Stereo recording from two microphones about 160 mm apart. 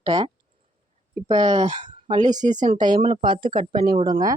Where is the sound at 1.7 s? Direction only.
50° right (ahead or behind).